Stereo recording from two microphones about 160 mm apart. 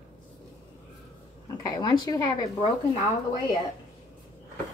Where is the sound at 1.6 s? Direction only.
25° left (ahead or behind).